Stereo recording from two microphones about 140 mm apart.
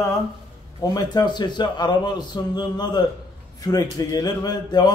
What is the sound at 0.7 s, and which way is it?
A man's voice, 30° left (ahead or behind).